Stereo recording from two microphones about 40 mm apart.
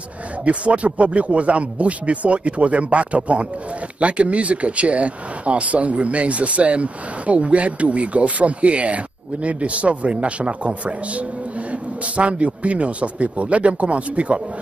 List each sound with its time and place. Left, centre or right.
0.5 s speech: right